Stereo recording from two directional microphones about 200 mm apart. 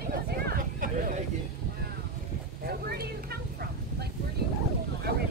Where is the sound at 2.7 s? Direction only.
50° right (ahead or behind).